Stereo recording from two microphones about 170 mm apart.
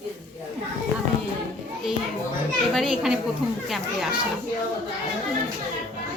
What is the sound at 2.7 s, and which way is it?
Speech, 5° right (ahead or behind).